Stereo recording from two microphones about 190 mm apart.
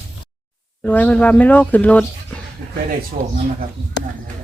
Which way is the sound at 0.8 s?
10° left (ahead or behind).